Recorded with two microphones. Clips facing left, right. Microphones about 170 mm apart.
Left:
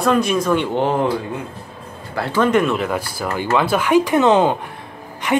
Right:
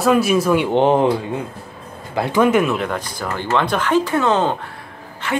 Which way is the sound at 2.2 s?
15° right (ahead or behind).